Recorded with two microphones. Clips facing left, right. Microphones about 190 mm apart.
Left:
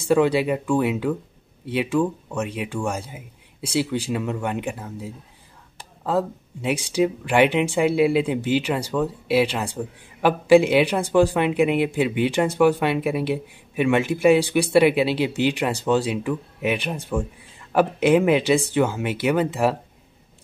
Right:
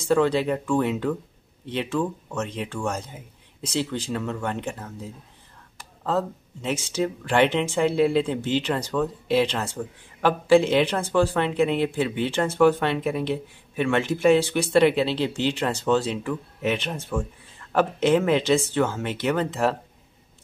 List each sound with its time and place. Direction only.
0.0 s speech: 10° left (ahead or behind)